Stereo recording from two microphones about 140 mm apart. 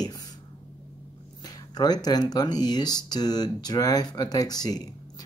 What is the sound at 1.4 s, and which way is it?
Speech, 30° left (ahead or behind).